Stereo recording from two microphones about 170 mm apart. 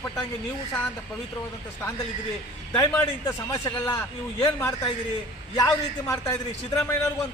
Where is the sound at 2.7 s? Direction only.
15° left (ahead or behind).